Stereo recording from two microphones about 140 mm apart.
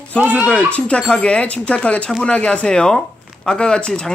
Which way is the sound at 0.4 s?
10° left (ahead or behind).